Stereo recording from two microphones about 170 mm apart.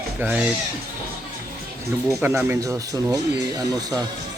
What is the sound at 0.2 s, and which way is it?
Speech, 10° right (ahead or behind).